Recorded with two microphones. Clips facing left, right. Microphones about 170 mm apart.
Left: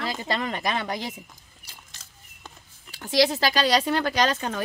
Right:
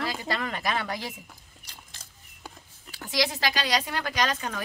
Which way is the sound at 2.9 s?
30° left (ahead or behind).